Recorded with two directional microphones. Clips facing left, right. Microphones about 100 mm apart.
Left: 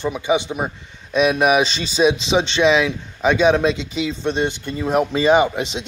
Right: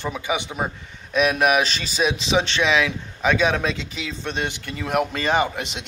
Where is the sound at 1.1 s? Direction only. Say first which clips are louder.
Left 3 dB; centre (ahead or behind).